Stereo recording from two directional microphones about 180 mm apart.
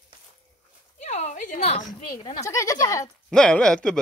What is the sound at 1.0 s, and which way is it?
Speech, 40° left (ahead or behind).